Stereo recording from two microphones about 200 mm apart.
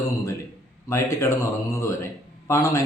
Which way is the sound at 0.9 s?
15° left (ahead or behind).